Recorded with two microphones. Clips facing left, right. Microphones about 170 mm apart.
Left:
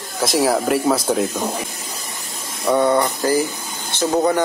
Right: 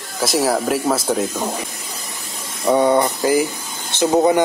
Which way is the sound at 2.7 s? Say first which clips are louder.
Right 1 dB; 15° right (ahead or behind).